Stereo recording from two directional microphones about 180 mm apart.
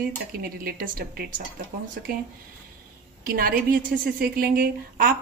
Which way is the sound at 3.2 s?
55° right (ahead or behind).